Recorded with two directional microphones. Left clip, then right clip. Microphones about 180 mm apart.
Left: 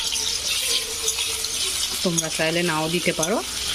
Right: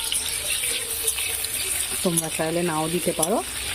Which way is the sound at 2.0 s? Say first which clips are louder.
Left 1 dB; 5° left (ahead or behind).